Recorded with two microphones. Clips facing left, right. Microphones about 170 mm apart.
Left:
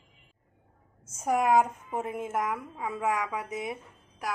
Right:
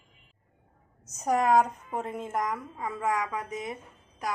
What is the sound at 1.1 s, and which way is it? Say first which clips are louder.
A woman's voice: right 1 dB; 5° left (ahead or behind).